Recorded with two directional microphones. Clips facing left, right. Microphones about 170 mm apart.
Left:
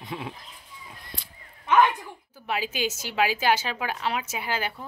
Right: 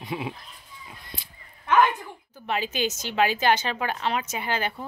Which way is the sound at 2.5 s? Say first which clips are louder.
Right 1 dB; 5° left (ahead or behind).